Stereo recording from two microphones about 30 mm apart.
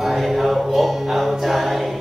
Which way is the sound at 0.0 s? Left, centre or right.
Centre.